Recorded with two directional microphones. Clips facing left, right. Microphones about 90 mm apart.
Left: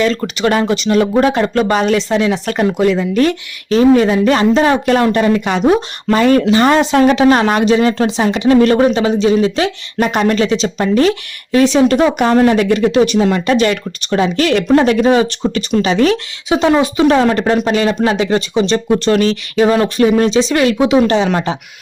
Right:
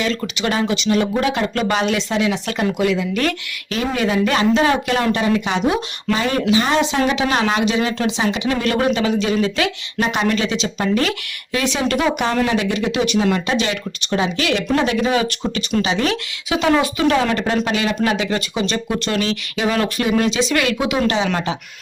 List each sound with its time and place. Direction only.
0.0 s speech: 40° left (ahead or behind)
10.0 s speech: 45° left (ahead or behind)
12.4 s speech: 45° left (ahead or behind)
13.5 s speech: 50° left (ahead or behind); by 15.8 s 30° left (ahead or behind)
15.8 s speech: 40° left (ahead or behind)
17.2 s speech: 40° left (ahead or behind)